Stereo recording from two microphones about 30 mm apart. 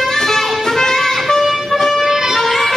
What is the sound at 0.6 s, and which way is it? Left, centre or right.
Music, centre.